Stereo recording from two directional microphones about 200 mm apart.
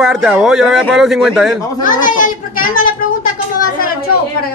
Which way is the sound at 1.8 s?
40° left (ahead or behind).